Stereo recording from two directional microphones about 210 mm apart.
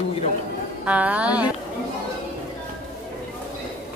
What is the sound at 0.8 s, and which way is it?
Speech, 5° right (ahead or behind).